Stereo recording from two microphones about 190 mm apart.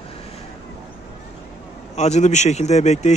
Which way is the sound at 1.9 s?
35° left (ahead or behind).